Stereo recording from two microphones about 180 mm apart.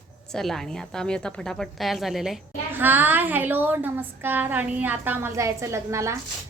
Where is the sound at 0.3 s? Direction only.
Centre (ahead or behind).